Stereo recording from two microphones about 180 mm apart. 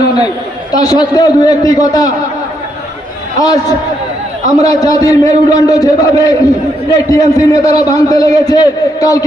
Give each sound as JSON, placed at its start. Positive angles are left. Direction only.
{"t": 0.7, "sound": "a man's voice", "side_deg": 20}
{"t": 3.4, "sound": "a man's voice", "side_deg": 20}